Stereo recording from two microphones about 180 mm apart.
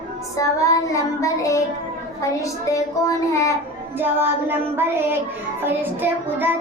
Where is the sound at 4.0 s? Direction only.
10° right (ahead or behind).